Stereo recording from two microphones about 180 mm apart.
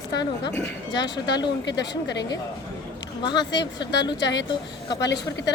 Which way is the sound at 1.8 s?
75° left (ahead or behind).